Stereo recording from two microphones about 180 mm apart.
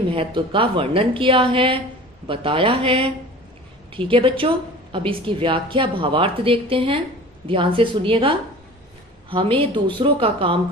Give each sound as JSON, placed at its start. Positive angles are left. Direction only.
{"t": 0.1, "sound": "a woman's voice", "side_deg": -30}